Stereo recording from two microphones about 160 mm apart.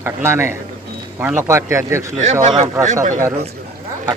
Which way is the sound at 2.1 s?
50° right (ahead or behind).